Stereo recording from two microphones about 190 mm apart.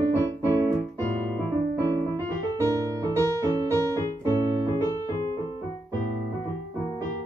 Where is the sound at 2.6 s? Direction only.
15° right (ahead or behind).